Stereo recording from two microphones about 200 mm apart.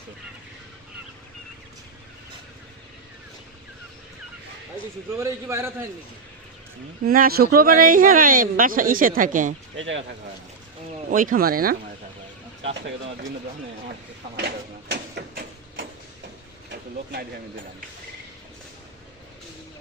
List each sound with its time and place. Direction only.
5.1 s a man's voice: 15° right (ahead or behind)
7.0 s speech: 50° right (ahead or behind)
9.7 s speech: 70° right (ahead or behind)
11.1 s speech: 45° right (ahead or behind)
14.3 s a sound: 55° right (ahead or behind)